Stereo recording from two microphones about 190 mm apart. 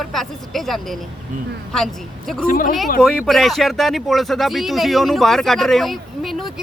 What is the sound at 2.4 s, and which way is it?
Speech, 50° left (ahead or behind).